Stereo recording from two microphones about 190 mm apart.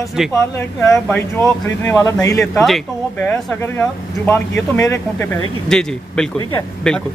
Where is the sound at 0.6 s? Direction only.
10° left (ahead or behind).